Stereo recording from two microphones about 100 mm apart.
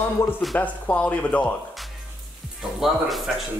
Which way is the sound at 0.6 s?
10° left (ahead or behind).